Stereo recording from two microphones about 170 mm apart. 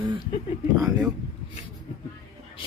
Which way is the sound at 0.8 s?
20° right (ahead or behind).